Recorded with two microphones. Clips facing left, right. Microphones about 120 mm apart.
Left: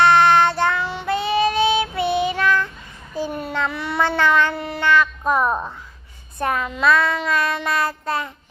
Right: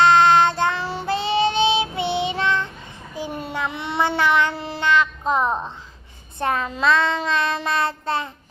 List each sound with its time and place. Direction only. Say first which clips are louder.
0.0 s child singing: even; 20° right (ahead or behind)
0.8 s child singing: left 1 dB; 35° right (ahead or behind)